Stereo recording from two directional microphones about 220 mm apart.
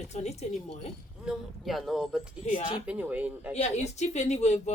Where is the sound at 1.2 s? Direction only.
Centre (ahead or behind).